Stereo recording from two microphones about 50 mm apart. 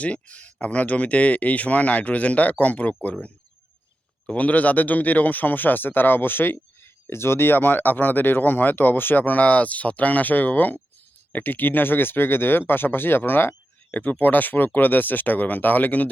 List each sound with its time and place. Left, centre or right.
0.0 s speech: left
4.4 s speech: left
14.0 s speech: left